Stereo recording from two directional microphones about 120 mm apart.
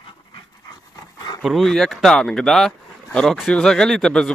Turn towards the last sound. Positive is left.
turn(degrees=5)  # may be behind; listen again after turning